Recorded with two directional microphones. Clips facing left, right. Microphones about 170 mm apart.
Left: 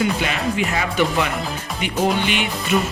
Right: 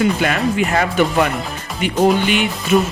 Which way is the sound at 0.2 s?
55° right (ahead or behind).